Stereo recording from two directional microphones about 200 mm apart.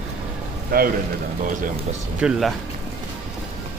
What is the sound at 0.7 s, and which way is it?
Speech, 50° right (ahead or behind).